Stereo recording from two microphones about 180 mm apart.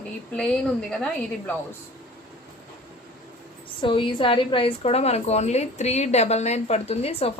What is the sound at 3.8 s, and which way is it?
A woman's voice, 25° left (ahead or behind).